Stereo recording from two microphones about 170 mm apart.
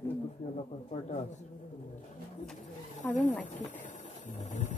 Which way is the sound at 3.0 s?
5° left (ahead or behind).